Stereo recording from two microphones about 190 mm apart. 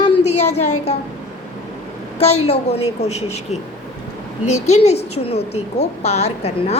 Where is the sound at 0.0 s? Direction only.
35° left (ahead or behind).